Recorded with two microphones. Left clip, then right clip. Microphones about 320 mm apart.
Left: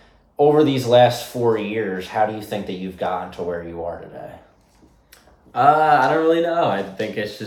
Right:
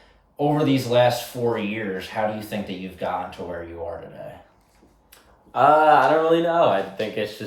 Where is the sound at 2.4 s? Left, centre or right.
Centre.